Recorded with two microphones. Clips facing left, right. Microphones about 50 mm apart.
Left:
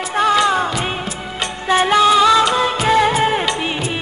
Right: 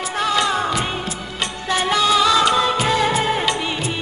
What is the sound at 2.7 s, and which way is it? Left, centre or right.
Music, centre.